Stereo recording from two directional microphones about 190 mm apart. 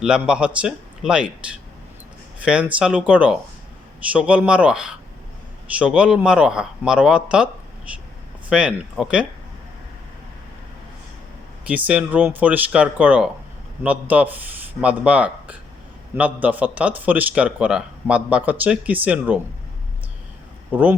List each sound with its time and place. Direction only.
0.0 s speech: 5° right (ahead or behind)
2.4 s a man's voice: 5° right (ahead or behind)
11.7 s a man's voice: 5° right (ahead or behind)
20.7 s a man's voice: 10° right (ahead or behind)